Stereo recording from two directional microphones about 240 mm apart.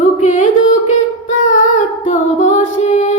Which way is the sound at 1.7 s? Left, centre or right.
Left.